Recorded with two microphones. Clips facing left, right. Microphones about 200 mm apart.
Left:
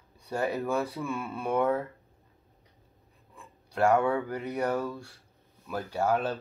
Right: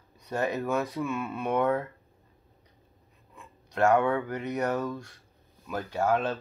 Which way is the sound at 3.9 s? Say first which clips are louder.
Right 1 dB; 5° left (ahead or behind).